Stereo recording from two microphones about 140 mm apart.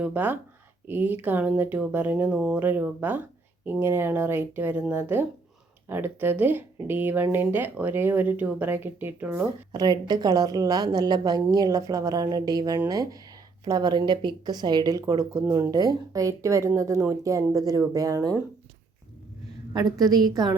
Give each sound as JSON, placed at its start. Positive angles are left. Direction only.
{"t": 0.0, "sound": "speech", "side_deg": -10}
{"t": 9.7, "sound": "speech", "side_deg": -30}
{"t": 19.7, "sound": "speech", "side_deg": -25}